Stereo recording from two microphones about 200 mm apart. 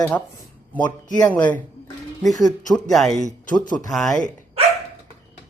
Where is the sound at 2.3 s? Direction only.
20° left (ahead or behind).